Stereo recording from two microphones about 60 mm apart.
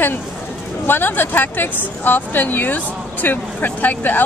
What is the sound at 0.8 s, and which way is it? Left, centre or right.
Speech, left.